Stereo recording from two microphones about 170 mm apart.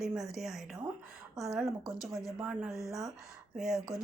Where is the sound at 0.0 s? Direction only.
Centre (ahead or behind).